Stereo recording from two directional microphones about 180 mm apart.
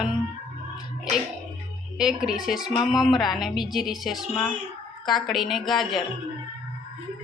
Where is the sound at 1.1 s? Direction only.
40° right (ahead or behind).